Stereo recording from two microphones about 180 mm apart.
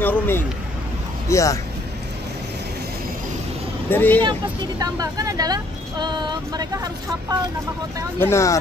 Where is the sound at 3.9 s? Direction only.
10° left (ahead or behind).